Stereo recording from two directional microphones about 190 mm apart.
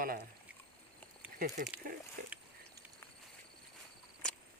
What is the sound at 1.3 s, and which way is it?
Speech, 50° right (ahead or behind).